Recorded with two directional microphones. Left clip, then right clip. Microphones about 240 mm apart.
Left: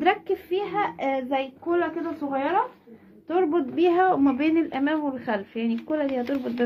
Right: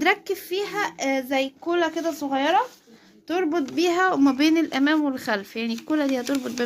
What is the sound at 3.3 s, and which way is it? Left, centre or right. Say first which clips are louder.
A woman's voice: left 1 dB; right.